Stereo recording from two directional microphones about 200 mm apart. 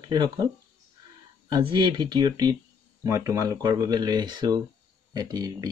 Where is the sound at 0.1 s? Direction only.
20° right (ahead or behind).